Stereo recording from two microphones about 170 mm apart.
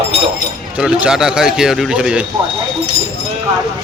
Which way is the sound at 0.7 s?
5° right (ahead or behind).